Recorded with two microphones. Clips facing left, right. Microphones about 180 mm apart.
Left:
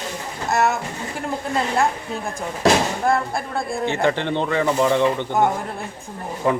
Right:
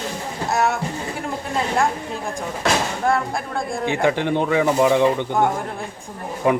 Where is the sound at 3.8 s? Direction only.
10° right (ahead or behind).